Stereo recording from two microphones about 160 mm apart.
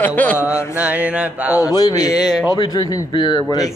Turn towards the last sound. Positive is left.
turn(degrees=25)  # may be behind; listen again after turning